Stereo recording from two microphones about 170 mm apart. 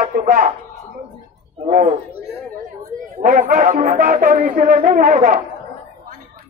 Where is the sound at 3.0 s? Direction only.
50° right (ahead or behind).